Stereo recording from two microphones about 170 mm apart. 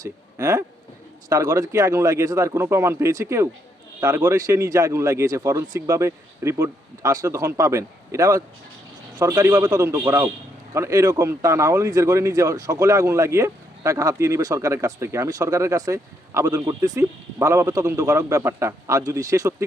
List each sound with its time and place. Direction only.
0.0 s speech: 20° right (ahead or behind)